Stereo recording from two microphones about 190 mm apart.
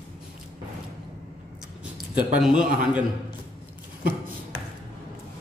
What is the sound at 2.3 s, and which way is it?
Speech, 5° right (ahead or behind).